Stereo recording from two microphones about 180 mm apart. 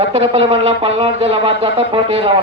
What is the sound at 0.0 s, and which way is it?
Speech, 35° right (ahead or behind).